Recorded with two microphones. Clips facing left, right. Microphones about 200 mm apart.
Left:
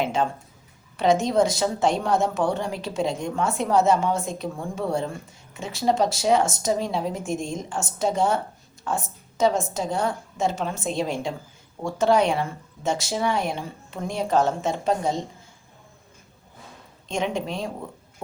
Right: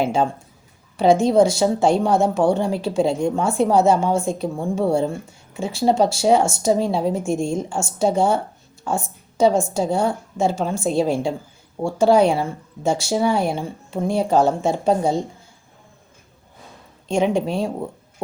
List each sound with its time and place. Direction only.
0.0 s a woman's voice: 30° right (ahead or behind)
17.2 s speech: 35° right (ahead or behind)